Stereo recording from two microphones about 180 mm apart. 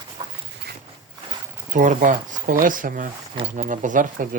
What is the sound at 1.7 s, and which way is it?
Speech, 45° right (ahead or behind).